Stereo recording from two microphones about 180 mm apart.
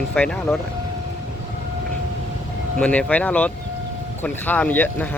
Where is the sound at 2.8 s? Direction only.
5° left (ahead or behind).